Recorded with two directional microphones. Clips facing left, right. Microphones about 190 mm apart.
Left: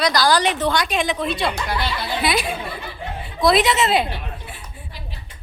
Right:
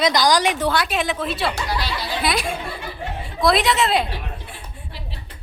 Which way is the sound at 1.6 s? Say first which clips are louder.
Left 1 dB; 55° left (ahead or behind).